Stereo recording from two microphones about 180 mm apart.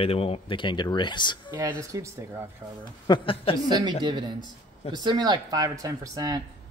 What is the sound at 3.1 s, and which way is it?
Speech, 30° left (ahead or behind).